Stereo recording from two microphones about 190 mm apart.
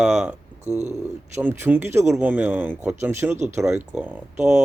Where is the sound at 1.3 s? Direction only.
10° right (ahead or behind).